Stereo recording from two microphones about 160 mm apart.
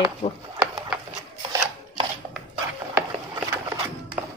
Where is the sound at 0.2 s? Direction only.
30° left (ahead or behind).